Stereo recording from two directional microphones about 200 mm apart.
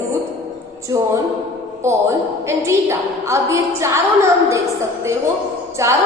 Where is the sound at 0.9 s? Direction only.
15° right (ahead or behind).